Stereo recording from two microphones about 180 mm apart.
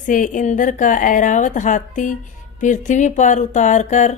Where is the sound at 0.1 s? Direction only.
45° left (ahead or behind).